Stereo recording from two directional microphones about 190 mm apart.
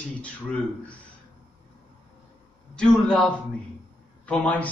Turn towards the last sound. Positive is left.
turn(degrees=5)  # may be behind; listen again after turning